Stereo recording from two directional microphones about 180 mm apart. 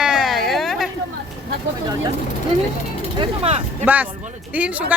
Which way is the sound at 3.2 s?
35° right (ahead or behind).